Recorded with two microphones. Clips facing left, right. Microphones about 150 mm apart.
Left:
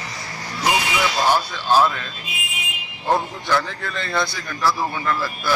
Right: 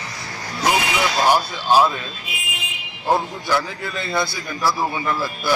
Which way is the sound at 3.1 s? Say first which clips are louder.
Right 1 dB; 10° right (ahead or behind).